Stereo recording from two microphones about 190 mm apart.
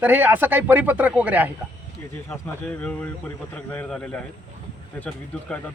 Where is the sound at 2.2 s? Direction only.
10° left (ahead or behind).